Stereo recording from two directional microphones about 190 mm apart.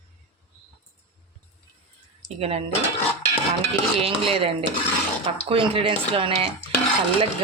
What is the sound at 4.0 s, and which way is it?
Speech, 30° right (ahead or behind).